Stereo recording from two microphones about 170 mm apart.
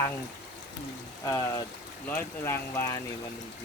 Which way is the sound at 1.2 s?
20° left (ahead or behind).